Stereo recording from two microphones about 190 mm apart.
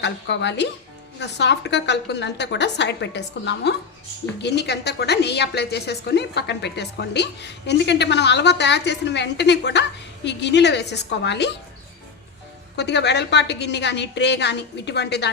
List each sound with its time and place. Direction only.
0.0 s a woman's voice: 65° left (ahead or behind)
12.7 s a woman's voice: 65° left (ahead or behind)